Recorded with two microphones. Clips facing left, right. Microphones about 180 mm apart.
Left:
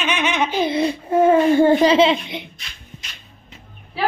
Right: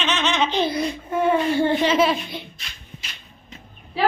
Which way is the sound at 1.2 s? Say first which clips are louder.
Left 6 dB; 45° left (ahead or behind).